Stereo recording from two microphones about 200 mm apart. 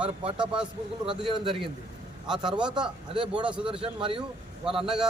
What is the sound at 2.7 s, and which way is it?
Speech, 25° right (ahead or behind).